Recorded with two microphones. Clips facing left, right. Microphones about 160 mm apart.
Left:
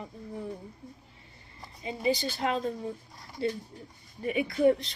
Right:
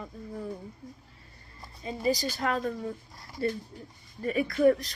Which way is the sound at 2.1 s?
25° left (ahead or behind).